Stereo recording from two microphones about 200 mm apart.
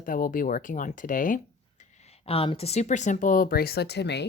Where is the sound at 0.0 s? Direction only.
45° left (ahead or behind).